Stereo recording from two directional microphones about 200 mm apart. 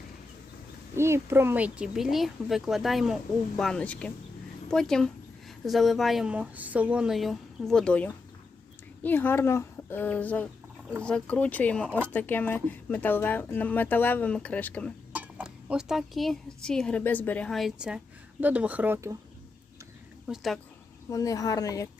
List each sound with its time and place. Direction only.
0.9 s speech: 15° right (ahead or behind); by 14.9 s 5° left (ahead or behind)
15.1 s speech: 5° right (ahead or behind)
20.2 s speech: centre (ahead or behind)
21.1 s speech: 15° left (ahead or behind)